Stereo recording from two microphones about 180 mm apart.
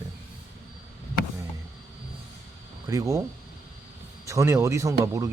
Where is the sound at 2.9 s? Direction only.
20° right (ahead or behind).